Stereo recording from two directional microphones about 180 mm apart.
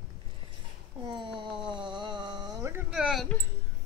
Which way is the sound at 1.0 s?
25° right (ahead or behind).